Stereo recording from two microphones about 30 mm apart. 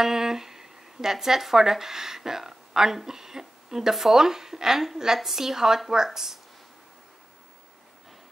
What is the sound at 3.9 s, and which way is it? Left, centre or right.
Speech, centre.